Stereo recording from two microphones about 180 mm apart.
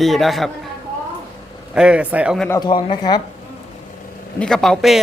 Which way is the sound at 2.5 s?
25° left (ahead or behind).